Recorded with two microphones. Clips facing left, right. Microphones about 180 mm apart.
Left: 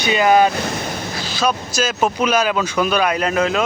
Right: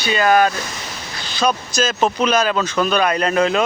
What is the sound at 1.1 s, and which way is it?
Speech, 5° left (ahead or behind).